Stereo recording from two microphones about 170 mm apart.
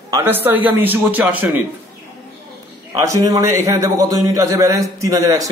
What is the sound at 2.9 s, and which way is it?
A man's voice, 20° right (ahead or behind).